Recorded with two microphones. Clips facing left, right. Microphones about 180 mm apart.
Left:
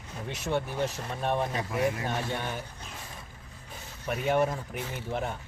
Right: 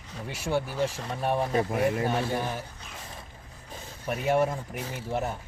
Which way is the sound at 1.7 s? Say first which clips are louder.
Right 3 dB; 50° right (ahead or behind).